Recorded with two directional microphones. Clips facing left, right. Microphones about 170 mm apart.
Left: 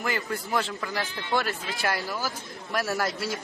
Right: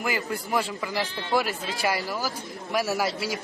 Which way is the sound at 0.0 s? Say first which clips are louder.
Right 1 dB; 5° right (ahead or behind).